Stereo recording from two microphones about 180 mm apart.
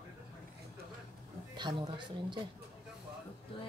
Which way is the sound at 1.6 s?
25° right (ahead or behind).